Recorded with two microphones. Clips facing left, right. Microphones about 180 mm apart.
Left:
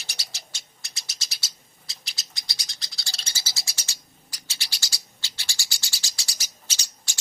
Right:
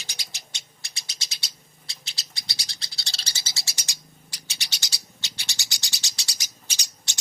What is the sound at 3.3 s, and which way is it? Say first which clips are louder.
Bird: even; 15° right (ahead or behind).